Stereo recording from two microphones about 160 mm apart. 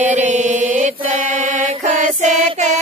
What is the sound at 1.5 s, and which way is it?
Music, 50° right (ahead or behind).